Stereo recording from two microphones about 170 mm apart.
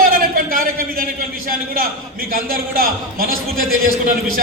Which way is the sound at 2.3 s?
55° right (ahead or behind).